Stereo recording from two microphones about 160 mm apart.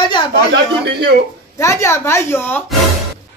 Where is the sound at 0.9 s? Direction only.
85° right.